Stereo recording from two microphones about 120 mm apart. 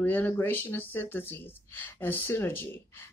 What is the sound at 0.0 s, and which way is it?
Speech, 15° left (ahead or behind).